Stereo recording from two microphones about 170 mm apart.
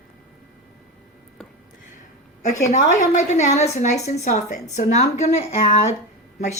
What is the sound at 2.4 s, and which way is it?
Speech, 45° left (ahead or behind).